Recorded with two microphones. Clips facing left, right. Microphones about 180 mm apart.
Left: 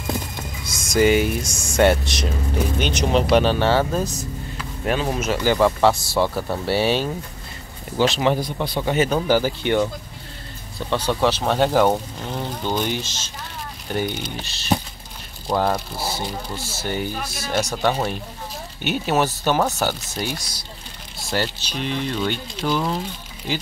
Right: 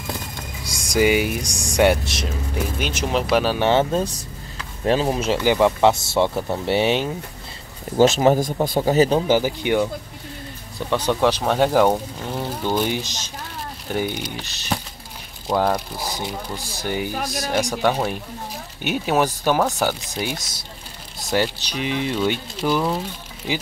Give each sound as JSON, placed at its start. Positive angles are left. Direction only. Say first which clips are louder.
{"t": 0.7, "sound": "speech", "louder": "left 1 dB", "side_deg": -15}
{"t": 3.5, "sound": "speech", "louder": "right 1 dB", "side_deg": -20}
{"t": 8.0, "sound": "speech", "louder": "right 4 dB", "side_deg": -45}
{"t": 9.3, "sound": "speech", "louder": "even", "side_deg": -15}
{"t": 10.9, "sound": "speech", "louder": "right 1 dB", "side_deg": -15}
{"t": 13.0, "sound": "speech", "louder": "right 1 dB", "side_deg": -15}
{"t": 16.0, "sound": "speech", "louder": "left 1 dB", "side_deg": -15}